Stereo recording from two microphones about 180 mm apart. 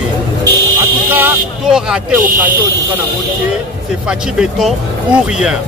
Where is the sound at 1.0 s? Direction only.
10° right (ahead or behind).